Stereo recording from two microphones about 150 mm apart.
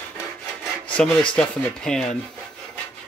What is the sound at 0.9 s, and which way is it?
Speech, 5° left (ahead or behind).